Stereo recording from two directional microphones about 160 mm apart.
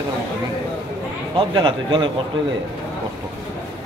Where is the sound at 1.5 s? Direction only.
30° right (ahead or behind).